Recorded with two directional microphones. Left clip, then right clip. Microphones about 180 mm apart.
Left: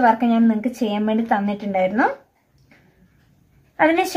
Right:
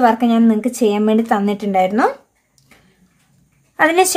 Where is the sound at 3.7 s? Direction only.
35° right (ahead or behind).